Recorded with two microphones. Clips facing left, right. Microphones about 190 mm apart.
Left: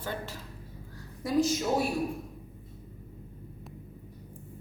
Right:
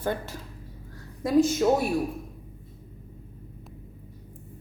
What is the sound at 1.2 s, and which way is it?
Speech, 55° right (ahead or behind).